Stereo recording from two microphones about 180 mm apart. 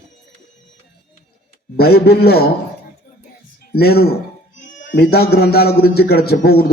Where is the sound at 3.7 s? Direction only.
60° left (ahead or behind).